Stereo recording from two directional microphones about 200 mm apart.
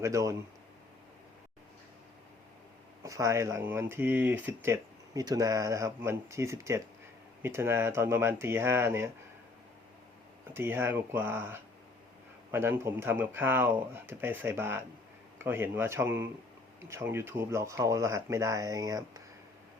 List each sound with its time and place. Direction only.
0.0 s speech: 15° right (ahead or behind)
3.0 s speech: 15° right (ahead or behind)
10.5 s speech: 10° right (ahead or behind)